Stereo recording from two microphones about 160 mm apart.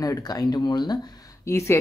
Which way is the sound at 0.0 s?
20° left (ahead or behind).